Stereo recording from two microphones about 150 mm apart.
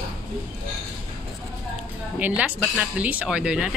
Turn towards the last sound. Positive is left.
turn(degrees=-5)  # may be behind; listen again after turning